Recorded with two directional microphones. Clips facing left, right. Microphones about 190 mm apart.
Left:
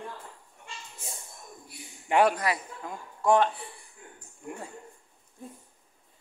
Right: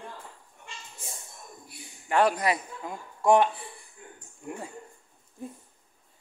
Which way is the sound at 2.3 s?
20° right (ahead or behind).